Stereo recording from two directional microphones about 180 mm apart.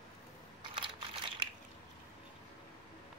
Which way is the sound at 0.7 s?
30° right (ahead or behind).